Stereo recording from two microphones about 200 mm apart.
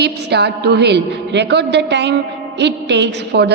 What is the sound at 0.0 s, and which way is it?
A woman's voice, 55° right (ahead or behind).